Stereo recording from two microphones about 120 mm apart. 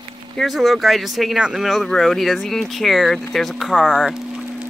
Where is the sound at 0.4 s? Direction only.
Centre (ahead or behind).